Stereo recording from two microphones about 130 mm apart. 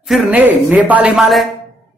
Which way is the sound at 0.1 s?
Centre (ahead or behind).